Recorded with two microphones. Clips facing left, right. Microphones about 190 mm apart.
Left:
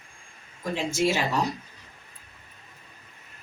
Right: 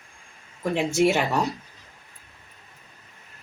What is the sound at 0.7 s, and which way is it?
Speech, 65° right (ahead or behind).